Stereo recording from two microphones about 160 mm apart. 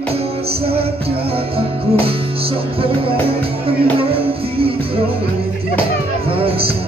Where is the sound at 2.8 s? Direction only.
35° right (ahead or behind).